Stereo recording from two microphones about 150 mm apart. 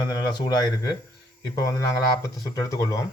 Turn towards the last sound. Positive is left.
turn(degrees=20)  # may be behind; listen again after turning